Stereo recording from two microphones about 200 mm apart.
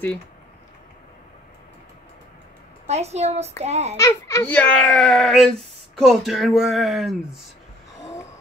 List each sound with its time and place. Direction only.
2.9 s a woman's voice: 30° right (ahead or behind)
3.9 s a child's voice: 15° left (ahead or behind); by 7.2 s centre (ahead or behind)